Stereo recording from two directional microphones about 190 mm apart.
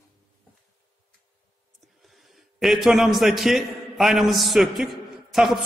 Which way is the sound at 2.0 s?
Centre (ahead or behind).